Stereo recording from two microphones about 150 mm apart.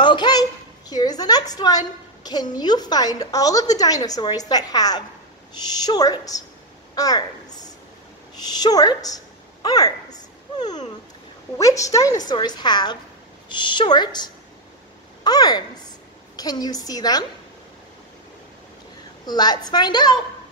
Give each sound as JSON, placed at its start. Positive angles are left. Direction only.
{"t": 0.0, "sound": "a woman's voice", "side_deg": 30}
{"t": 7.0, "sound": "a sound", "side_deg": 25}
{"t": 8.4, "sound": "a woman's voice", "side_deg": 25}
{"t": 11.5, "sound": "a woman's voice", "side_deg": 20}
{"t": 19.2, "sound": "a woman's voice", "side_deg": 30}